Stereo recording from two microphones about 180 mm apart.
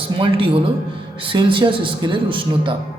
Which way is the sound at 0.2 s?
30° right (ahead or behind).